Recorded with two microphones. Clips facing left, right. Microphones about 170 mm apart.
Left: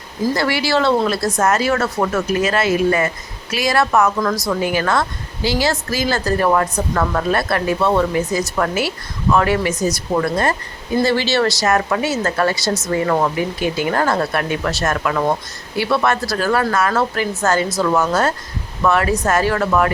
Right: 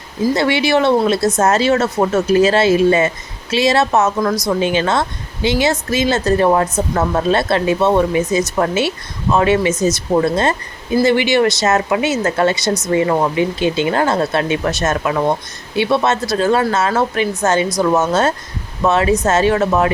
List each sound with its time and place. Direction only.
0.3 s speech: 25° right (ahead or behind)